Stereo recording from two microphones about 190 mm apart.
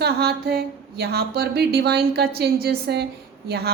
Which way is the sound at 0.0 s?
55° right (ahead or behind).